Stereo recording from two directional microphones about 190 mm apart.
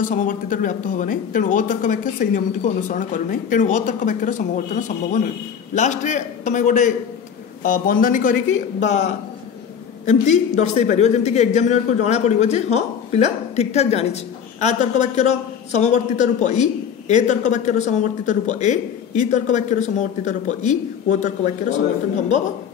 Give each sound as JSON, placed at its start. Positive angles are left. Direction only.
{"t": 0.1, "sound": "a man's voice", "side_deg": 45}